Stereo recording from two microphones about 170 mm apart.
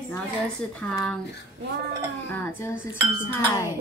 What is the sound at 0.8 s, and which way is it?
Speech, 10° left (ahead or behind).